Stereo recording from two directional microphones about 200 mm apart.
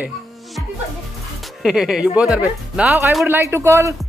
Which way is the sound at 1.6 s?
Centre (ahead or behind).